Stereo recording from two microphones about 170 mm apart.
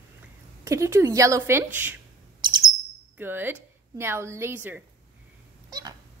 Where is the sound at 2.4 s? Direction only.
25° right (ahead or behind).